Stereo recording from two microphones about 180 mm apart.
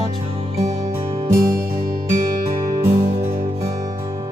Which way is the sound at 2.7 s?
15° right (ahead or behind).